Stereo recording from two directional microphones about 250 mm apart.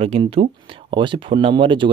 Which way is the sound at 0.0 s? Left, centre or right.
Right.